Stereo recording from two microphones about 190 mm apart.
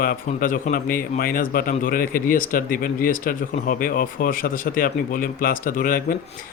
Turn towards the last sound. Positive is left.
turn(degrees=50)  # may be behind; listen again after turning